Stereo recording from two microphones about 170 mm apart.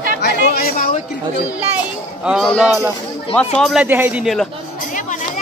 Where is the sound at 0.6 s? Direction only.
55° left (ahead or behind).